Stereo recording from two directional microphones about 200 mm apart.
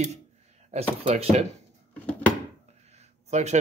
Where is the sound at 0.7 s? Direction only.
35° right (ahead or behind).